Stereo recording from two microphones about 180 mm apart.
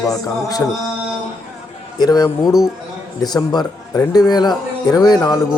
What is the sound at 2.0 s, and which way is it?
Speech, 20° left (ahead or behind).